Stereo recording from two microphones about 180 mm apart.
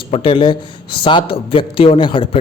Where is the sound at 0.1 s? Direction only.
30° left (ahead or behind).